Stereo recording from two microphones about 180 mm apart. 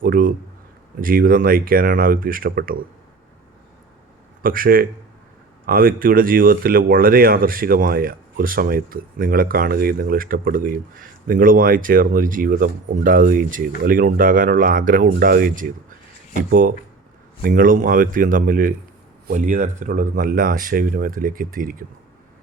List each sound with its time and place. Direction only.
0.0 s speech: 50° right (ahead or behind)
4.4 s speech: 50° right (ahead or behind)